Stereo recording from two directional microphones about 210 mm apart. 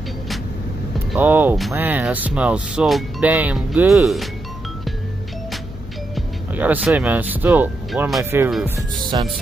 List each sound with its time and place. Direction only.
1.1 s speech: 10° right (ahead or behind)
6.1 s speech: 5° right (ahead or behind)
9.1 s speech: 20° right (ahead or behind)